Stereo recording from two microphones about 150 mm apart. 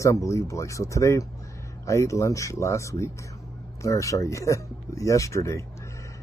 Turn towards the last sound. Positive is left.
turn(degrees=20)  # may be behind; listen again after turning